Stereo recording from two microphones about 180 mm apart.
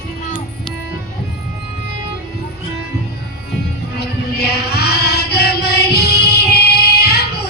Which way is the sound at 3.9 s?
60° left (ahead or behind).